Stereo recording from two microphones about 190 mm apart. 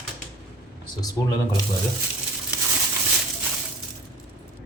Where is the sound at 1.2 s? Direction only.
15° left (ahead or behind).